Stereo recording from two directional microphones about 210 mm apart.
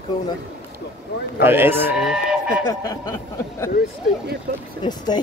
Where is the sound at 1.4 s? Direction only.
10° right (ahead or behind).